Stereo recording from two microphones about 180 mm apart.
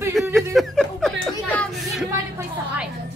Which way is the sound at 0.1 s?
Centre (ahead or behind).